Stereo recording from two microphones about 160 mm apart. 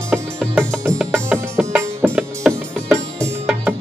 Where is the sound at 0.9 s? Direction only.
Centre (ahead or behind).